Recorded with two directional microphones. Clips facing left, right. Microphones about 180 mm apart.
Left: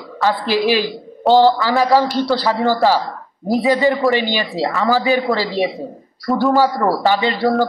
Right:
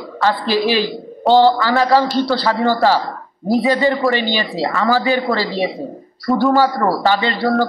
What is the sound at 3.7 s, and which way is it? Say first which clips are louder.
Speech: left 2 dB; 15° left (ahead or behind).